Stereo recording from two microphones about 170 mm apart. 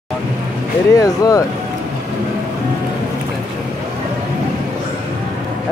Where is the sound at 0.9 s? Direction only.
20° left (ahead or behind).